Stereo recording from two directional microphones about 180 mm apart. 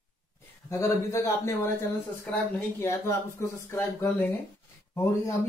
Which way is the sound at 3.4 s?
10° left (ahead or behind).